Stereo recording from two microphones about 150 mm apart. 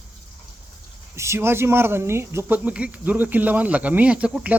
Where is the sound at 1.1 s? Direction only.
15° right (ahead or behind).